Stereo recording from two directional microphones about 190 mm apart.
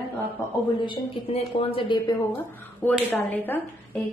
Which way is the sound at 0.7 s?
25° left (ahead or behind).